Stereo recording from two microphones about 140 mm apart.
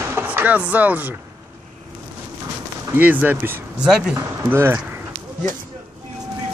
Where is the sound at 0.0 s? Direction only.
15° right (ahead or behind).